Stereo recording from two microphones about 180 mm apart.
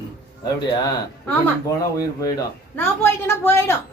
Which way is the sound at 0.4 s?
20° left (ahead or behind).